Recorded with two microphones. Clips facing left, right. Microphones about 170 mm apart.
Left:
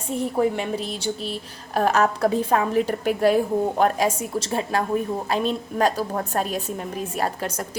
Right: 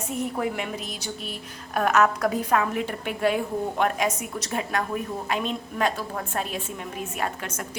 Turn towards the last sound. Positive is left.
turn(degrees=35)  # may be behind; listen again after turning